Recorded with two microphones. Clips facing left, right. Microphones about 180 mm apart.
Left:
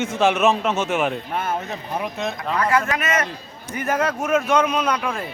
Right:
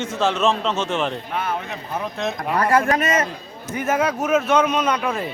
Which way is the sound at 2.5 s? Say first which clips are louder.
Right 3 dB; 35° right (ahead or behind).